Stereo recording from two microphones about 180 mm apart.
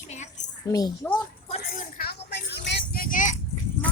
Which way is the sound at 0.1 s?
40° left (ahead or behind).